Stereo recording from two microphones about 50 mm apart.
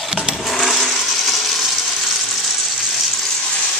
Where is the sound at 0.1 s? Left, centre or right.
Centre.